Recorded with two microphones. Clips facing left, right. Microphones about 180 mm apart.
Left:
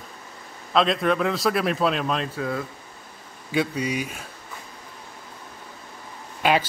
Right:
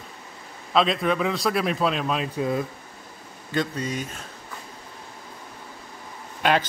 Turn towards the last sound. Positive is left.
turn(degrees=5)  # may be behind; listen again after turning